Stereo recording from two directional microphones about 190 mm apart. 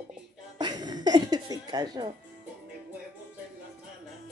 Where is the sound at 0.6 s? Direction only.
20° right (ahead or behind).